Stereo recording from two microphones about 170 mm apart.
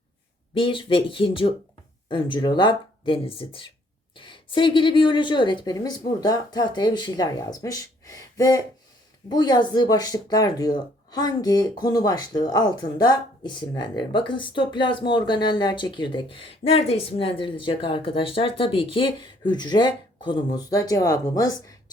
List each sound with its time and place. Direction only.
0.5 s speech: 30° left (ahead or behind)